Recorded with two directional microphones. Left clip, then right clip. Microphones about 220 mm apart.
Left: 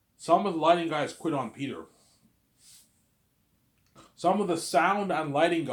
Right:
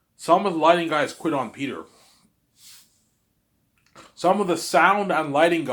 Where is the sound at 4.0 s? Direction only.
20° right (ahead or behind).